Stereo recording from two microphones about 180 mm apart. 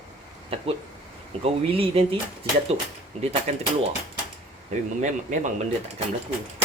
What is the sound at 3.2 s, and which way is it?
Speech, 35° right (ahead or behind).